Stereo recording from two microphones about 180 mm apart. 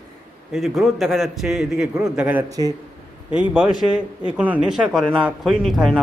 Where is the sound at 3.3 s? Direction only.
5° right (ahead or behind).